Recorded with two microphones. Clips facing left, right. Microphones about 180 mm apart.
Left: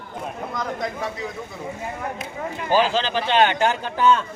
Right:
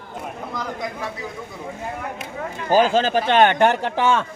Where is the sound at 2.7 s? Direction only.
45° right (ahead or behind); by 4.2 s 85° right.